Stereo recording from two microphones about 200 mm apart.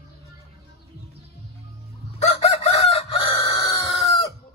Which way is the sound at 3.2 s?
15° left (ahead or behind).